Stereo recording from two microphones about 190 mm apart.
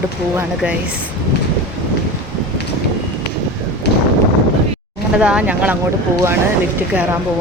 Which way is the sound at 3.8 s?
60° left (ahead or behind).